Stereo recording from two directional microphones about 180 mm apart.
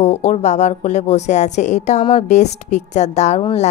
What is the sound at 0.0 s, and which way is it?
A woman's voice, 35° left (ahead or behind).